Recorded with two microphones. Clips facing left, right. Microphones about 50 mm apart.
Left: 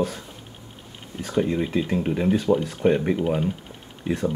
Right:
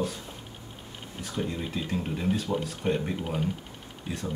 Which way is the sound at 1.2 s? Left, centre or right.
Left.